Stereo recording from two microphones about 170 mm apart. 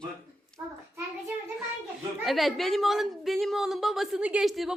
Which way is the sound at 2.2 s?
Centre (ahead or behind).